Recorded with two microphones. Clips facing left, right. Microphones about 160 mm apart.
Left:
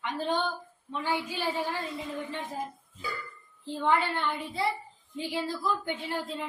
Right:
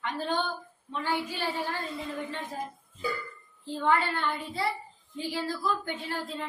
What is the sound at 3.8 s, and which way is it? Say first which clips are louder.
A woman's voice: even; 15° left (ahead or behind).